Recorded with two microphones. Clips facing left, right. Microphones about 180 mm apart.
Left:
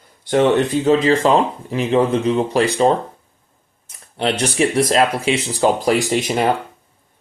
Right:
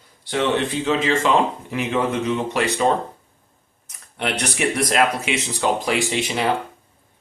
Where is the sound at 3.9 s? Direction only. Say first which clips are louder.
Left 5 dB; 30° left (ahead or behind).